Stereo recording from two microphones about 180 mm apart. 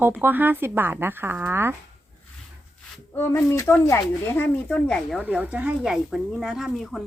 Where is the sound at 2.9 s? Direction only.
10° left (ahead or behind).